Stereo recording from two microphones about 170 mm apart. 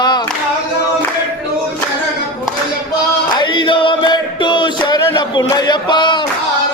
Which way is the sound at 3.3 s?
25° left (ahead or behind).